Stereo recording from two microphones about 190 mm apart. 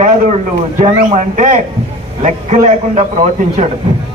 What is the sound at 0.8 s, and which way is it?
A man's voice, 40° right (ahead or behind).